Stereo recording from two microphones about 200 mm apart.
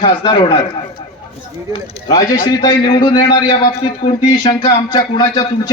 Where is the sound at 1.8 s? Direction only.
20° left (ahead or behind).